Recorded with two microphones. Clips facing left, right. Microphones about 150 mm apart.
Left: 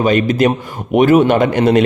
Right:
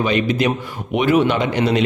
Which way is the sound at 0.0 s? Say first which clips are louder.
Left 5 dB; 45° left (ahead or behind).